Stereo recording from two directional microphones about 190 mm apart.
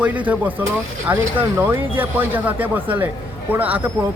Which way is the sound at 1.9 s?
10° right (ahead or behind).